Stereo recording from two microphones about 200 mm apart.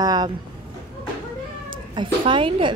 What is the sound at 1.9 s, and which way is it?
Speech, 25° right (ahead or behind).